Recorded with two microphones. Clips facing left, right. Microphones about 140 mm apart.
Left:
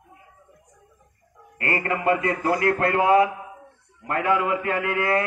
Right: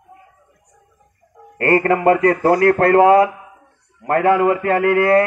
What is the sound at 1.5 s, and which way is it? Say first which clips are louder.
A man's voice: right 11 dB; 45° right (ahead or behind).